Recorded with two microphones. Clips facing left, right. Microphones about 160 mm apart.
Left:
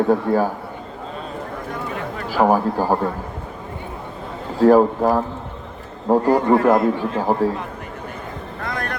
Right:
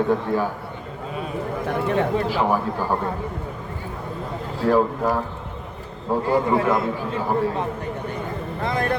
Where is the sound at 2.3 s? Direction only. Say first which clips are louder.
Left 5 dB; 40° left (ahead or behind).